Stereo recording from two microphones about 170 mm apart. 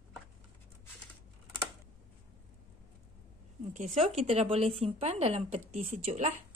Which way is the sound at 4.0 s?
35° right (ahead or behind).